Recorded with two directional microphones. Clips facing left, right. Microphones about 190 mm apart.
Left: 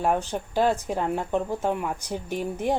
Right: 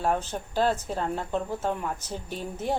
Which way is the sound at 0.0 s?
15° left (ahead or behind).